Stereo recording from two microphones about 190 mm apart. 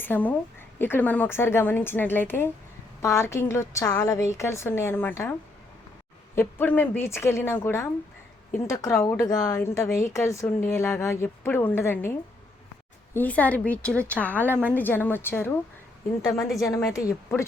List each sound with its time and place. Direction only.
0.0 s a woman's voice: 10° left (ahead or behind)
6.3 s a woman's voice: 10° left (ahead or behind)
13.1 s a woman's voice: 10° left (ahead or behind)
16.6 s a woman's voice: 15° left (ahead or behind)